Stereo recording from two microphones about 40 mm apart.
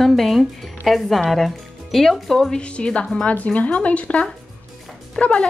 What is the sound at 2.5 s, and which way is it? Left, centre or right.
A woman's voice, left.